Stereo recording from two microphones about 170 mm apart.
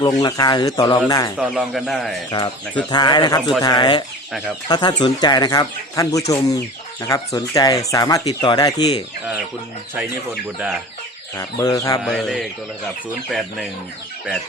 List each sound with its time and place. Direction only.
0.0 s speech: 20° left (ahead or behind)
1.4 s speech: centre (ahead or behind)
2.3 s speech: 35° left (ahead or behind)
11.3 s speech: 20° left (ahead or behind)
12.0 s speech: centre (ahead or behind)